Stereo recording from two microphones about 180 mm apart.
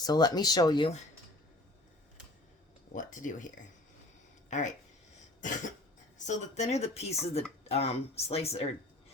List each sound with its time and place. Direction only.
0.0 s speech: 20° left (ahead or behind)
2.9 s speech: 45° left (ahead or behind)
4.4 s a sound: 40° left (ahead or behind)
5.4 s cough: 45° left (ahead or behind)
6.1 s speech: 40° left (ahead or behind)